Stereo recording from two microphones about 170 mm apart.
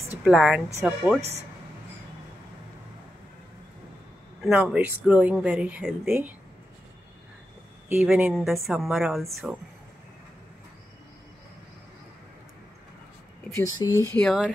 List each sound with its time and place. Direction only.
0.2 s a woman's voice: centre (ahead or behind)
4.4 s speech: 5° right (ahead or behind)
7.9 s speech: 10° right (ahead or behind)
13.8 s speech: 25° left (ahead or behind)
14.1 s speech: centre (ahead or behind)